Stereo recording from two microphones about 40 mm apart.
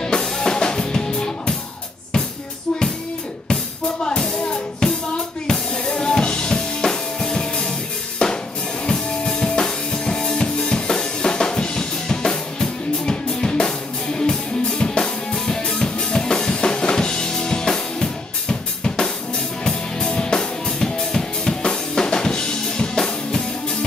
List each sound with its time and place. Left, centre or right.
0.0 s music: centre
4.0 s music: left
5.5 s drum kit: centre
6.9 s music: centre
8.2 s drum kit: left
8.8 s music: left